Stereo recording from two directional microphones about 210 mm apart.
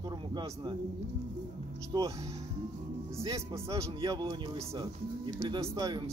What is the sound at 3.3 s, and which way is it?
Speech, 15° right (ahead or behind).